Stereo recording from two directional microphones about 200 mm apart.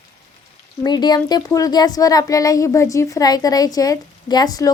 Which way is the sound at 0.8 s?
20° left (ahead or behind).